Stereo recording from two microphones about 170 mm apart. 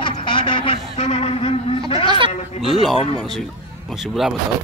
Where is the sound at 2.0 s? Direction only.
30° right (ahead or behind).